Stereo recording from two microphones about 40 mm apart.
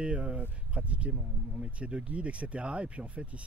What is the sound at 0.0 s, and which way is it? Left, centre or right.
Speech, right.